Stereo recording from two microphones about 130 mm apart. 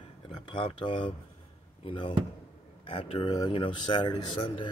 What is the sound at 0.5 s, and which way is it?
Speech, 40° left (ahead or behind).